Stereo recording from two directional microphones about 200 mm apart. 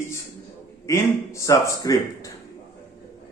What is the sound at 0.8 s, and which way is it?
Speech, 15° left (ahead or behind).